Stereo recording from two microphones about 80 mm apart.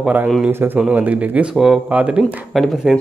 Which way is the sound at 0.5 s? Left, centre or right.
Right.